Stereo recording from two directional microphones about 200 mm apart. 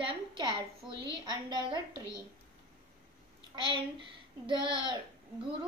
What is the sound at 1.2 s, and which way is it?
Speech, 20° right (ahead or behind).